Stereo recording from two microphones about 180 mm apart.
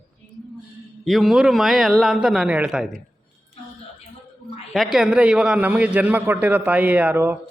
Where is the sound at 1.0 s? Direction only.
Centre (ahead or behind).